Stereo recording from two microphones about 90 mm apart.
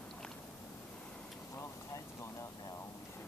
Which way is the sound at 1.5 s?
35° left (ahead or behind).